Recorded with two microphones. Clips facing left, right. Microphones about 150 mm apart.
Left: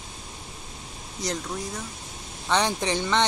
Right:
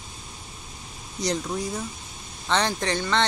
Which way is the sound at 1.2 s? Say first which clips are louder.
Right 4 dB; 5° right (ahead or behind).